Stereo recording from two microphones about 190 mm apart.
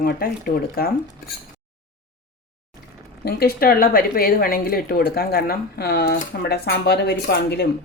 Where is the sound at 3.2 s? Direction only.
50° left (ahead or behind).